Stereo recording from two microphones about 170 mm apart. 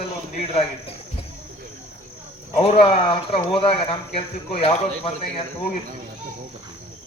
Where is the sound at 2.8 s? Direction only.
30° left (ahead or behind).